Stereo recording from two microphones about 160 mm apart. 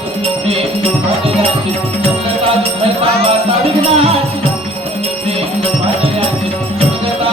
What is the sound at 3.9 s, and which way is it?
Music, 35° right (ahead or behind).